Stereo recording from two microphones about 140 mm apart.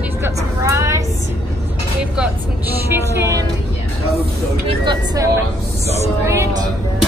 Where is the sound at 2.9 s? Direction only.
20° right (ahead or behind).